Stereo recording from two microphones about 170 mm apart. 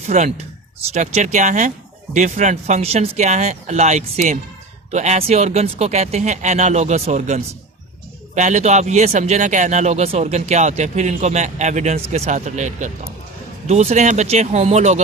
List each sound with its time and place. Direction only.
0.0 s a man's voice: 40° right (ahead or behind)